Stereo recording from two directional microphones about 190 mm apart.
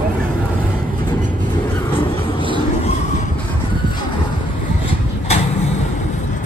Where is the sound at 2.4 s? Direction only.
25° left (ahead or behind).